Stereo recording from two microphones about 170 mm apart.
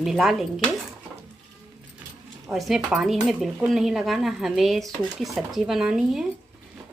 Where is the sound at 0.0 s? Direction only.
Centre (ahead or behind).